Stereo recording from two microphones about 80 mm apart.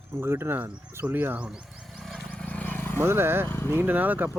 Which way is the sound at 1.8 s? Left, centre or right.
Centre.